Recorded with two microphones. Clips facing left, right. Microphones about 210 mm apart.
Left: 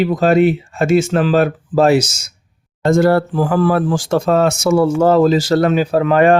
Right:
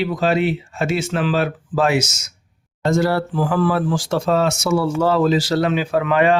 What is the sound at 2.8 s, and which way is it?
Speech, 50° left (ahead or behind).